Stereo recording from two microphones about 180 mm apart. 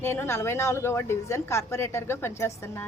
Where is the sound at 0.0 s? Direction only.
15° left (ahead or behind).